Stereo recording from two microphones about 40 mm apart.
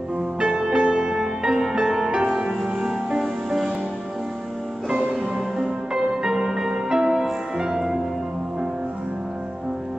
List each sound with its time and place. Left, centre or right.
0.4 s music: centre
2.2 s music: centre
5.9 s music: centre